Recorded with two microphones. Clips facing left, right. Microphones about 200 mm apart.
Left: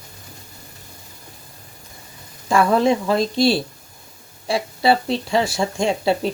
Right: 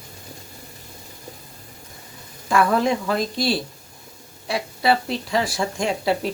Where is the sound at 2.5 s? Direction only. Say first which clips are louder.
Left 3 dB; 25° left (ahead or behind).